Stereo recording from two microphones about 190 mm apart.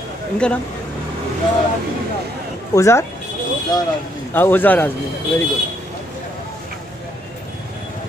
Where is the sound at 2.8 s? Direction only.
15° left (ahead or behind).